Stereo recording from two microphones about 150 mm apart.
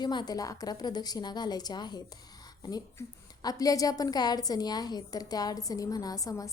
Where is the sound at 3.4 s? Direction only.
25° left (ahead or behind).